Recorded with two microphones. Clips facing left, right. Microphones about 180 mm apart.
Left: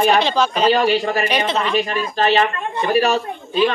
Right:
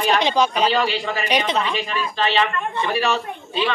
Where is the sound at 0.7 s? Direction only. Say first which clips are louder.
Left 5 dB; 45° left (ahead or behind).